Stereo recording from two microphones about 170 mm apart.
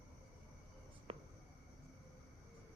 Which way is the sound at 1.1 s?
35° right (ahead or behind).